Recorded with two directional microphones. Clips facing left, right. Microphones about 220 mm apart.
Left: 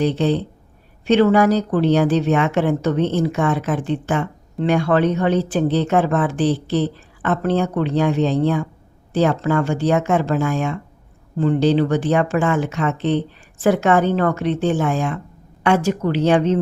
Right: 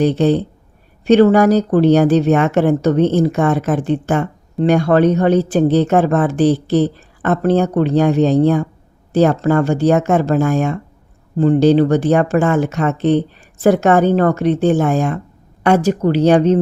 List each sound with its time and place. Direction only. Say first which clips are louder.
0.0 s speech: right 5 dB; 45° right (ahead or behind)